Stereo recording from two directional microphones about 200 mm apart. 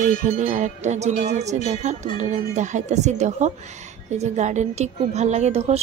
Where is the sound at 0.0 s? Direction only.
40° right (ahead or behind).